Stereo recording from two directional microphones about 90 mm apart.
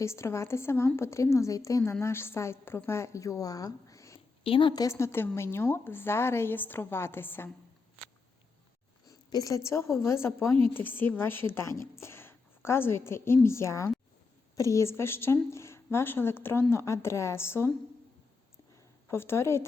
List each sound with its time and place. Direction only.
0.0 s a woman's voice: 30° left (ahead or behind)
4.4 s a woman's voice: 90° left
4.7 s a woman's voice: 40° left (ahead or behind)
9.0 s a woman's voice: 40° left (ahead or behind)
19.0 s a woman's voice: 25° left (ahead or behind)